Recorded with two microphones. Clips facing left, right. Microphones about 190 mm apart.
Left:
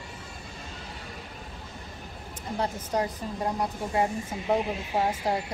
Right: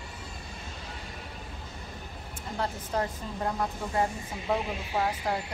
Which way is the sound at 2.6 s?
15° left (ahead or behind).